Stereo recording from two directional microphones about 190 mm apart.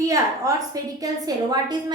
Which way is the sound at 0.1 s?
20° right (ahead or behind).